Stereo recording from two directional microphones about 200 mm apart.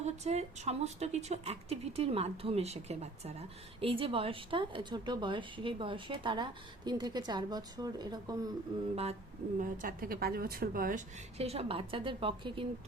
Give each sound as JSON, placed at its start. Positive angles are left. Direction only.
{"t": 0.0, "sound": "a woman's voice", "side_deg": -35}
{"t": 9.6, "sound": "a woman's voice", "side_deg": -40}